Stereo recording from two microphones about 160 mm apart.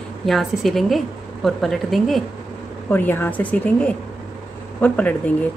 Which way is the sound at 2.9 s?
10° left (ahead or behind).